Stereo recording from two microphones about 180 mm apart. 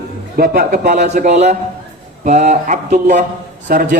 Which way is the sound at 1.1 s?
40° right (ahead or behind).